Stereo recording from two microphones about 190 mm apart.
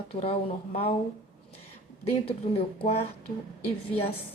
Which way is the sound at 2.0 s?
30° left (ahead or behind).